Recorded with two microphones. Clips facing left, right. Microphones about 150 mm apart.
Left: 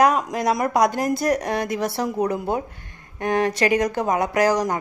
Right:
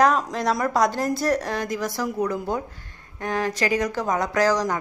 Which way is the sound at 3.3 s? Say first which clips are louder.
Left 4 dB; 65° left (ahead or behind).